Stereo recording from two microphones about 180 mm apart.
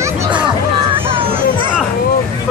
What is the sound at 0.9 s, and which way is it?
Hubbub, 30° right (ahead or behind).